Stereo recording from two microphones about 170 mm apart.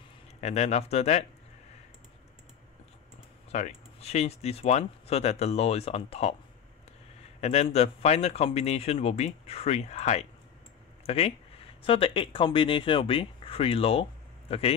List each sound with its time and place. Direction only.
0.4 s speech: 40° left (ahead or behind)
3.5 s speech: 45° left (ahead or behind)
7.3 s speech: 40° left (ahead or behind)